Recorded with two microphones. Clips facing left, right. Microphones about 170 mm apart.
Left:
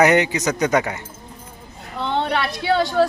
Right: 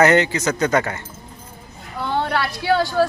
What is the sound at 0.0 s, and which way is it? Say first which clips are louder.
Speech: even; 15° left (ahead or behind).